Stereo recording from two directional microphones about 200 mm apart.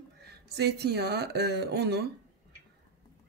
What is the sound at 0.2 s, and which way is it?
Speech, 55° right (ahead or behind).